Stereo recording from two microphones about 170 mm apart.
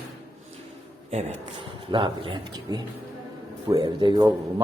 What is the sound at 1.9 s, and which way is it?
Speech, 30° right (ahead or behind).